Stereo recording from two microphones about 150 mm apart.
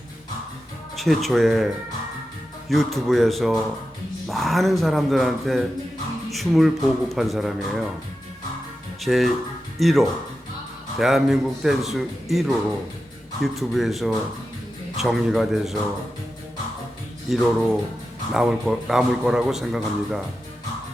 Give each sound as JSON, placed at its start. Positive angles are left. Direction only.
{"t": 0.9, "sound": "a man's voice", "side_deg": 0}
{"t": 2.6, "sound": "a man's voice", "side_deg": 0}
{"t": 9.0, "sound": "a man's voice", "side_deg": 0}
{"t": 17.3, "sound": "a man's voice", "side_deg": 0}